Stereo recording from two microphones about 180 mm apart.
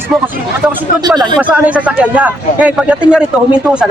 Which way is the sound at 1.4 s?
10° right (ahead or behind).